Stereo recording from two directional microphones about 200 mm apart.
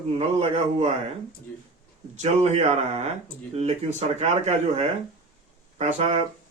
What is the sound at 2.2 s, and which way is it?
Speech, 35° right (ahead or behind).